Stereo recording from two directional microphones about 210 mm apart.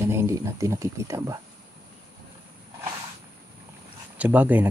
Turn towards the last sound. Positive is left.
turn(degrees=-10)  # may be behind; listen again after turning